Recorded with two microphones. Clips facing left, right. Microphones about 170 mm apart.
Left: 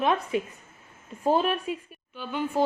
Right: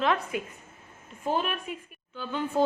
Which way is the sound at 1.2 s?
35° left (ahead or behind).